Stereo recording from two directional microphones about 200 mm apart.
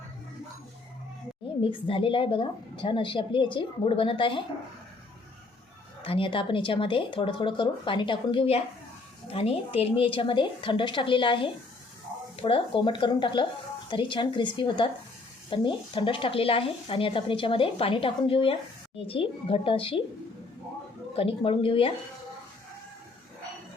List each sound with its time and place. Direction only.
1.6 s speech: 25° left (ahead or behind)
6.0 s speech: 25° left (ahead or behind)
21.2 s speech: 30° left (ahead or behind)